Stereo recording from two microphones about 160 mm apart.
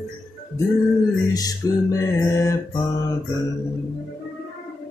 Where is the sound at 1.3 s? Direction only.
25° left (ahead or behind).